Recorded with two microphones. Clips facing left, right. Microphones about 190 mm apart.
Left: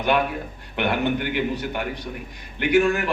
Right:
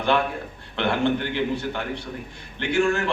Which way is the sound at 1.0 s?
10° left (ahead or behind).